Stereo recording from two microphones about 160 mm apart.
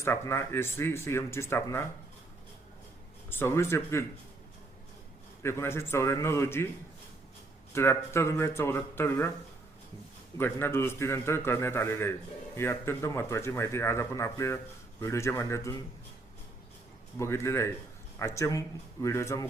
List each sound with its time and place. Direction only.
0.0 s speech: 15° left (ahead or behind)
3.2 s speech: 15° left (ahead or behind)
5.4 s speech: 15° left (ahead or behind)
7.7 s speech: 15° left (ahead or behind)
10.3 s speech: 15° left (ahead or behind)
17.2 s speech: 15° left (ahead or behind)